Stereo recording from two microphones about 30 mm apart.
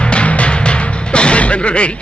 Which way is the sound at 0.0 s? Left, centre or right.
Left.